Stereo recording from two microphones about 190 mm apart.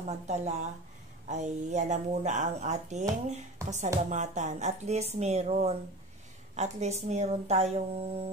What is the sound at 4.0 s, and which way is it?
Speech, 40° right (ahead or behind).